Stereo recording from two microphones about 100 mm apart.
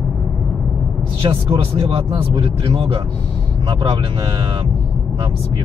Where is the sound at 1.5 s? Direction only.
75° right (ahead or behind).